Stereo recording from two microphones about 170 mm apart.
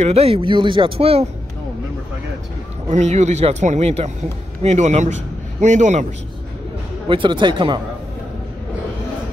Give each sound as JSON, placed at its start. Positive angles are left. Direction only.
{"t": 0.0, "sound": "speech", "side_deg": -35}
{"t": 2.9, "sound": "speech", "side_deg": -45}
{"t": 7.1, "sound": "speech", "side_deg": -30}